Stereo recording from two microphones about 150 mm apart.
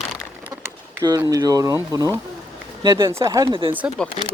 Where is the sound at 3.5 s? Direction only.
35° right (ahead or behind).